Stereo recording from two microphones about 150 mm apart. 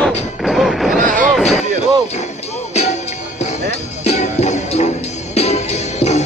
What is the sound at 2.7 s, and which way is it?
Music, 45° left (ahead or behind).